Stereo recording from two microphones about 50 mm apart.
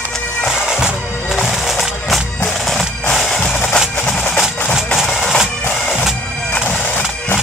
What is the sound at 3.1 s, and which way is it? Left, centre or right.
Music, centre.